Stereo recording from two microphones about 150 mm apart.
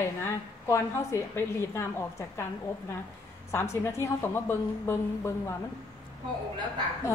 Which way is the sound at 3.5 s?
15° left (ahead or behind).